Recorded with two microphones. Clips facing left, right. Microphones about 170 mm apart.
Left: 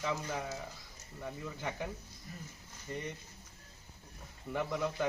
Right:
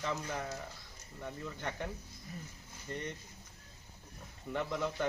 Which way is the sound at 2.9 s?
5° left (ahead or behind).